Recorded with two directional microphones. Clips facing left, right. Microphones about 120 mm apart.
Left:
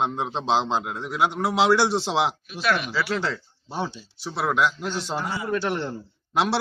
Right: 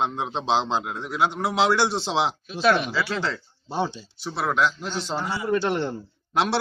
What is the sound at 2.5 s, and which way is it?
Speech, 25° right (ahead or behind).